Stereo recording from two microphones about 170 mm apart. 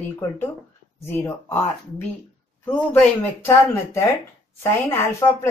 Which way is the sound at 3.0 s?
15° left (ahead or behind).